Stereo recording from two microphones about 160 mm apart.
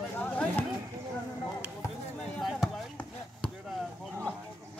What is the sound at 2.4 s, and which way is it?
Basketball bounce, centre (ahead or behind).